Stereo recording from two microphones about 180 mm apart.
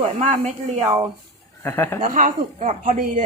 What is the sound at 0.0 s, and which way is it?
Speech, 35° right (ahead or behind).